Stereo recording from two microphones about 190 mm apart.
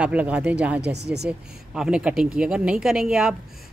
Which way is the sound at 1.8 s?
5° right (ahead or behind).